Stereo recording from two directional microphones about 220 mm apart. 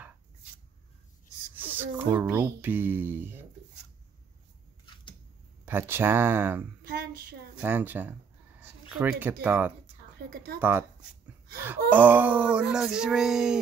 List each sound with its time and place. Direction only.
1.6 s speech: 10° right (ahead or behind)
5.7 s speech: 10° right (ahead or behind)
6.9 s a sound: 45° right (ahead or behind)
7.5 s speech: 10° right (ahead or behind)
10.2 s speech: 50° right (ahead or behind)
10.6 s speech: 10° right (ahead or behind)
11.9 s a sound: 5° right (ahead or behind)